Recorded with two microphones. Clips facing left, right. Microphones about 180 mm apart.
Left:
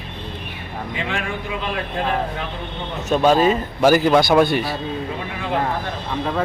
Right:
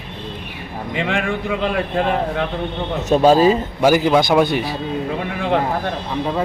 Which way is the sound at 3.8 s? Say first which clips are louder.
Left 1 dB; 10° right (ahead or behind).